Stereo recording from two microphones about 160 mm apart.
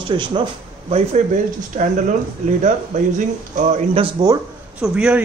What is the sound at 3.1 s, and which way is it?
Speech, 50° right (ahead or behind).